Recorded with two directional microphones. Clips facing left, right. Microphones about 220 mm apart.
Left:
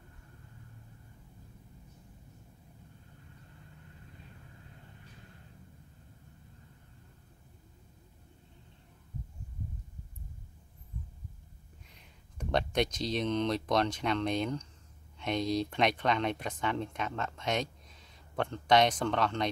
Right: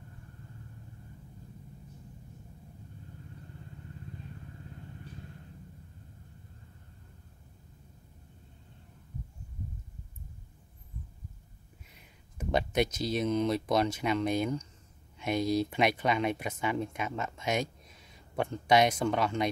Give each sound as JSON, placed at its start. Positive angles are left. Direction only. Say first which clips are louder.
{"t": 11.9, "sound": "speech", "louder": "right 1 dB", "side_deg": -5}